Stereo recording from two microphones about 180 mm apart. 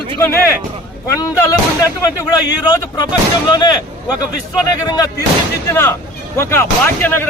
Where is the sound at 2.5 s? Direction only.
20° left (ahead or behind).